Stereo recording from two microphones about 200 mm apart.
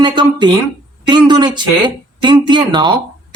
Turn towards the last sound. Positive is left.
turn(degrees=-25)  # may be behind; listen again after turning